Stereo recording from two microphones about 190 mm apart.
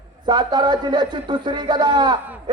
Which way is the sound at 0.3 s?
25° right (ahead or behind).